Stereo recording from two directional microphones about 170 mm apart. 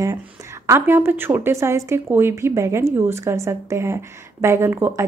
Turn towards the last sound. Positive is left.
turn(degrees=-15)  # may be behind; listen again after turning